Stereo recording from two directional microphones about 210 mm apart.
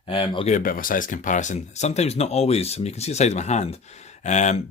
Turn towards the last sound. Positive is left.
turn(degrees=35)  # may be behind; listen again after turning